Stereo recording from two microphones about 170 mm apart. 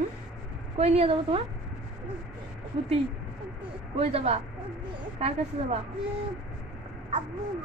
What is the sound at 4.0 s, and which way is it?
Speech, 35° right (ahead or behind).